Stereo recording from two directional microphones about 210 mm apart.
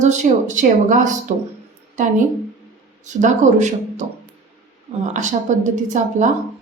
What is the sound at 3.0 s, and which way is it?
A woman's voice, 35° right (ahead or behind).